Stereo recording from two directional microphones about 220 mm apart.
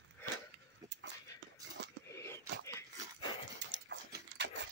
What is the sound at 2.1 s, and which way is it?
Whispering, 10° left (ahead or behind).